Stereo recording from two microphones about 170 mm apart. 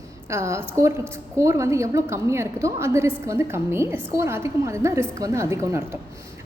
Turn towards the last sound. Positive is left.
turn(degrees=-15)  # may be behind; listen again after turning